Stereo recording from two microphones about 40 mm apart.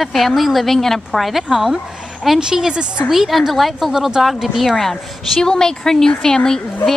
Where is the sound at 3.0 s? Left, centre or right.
Centre.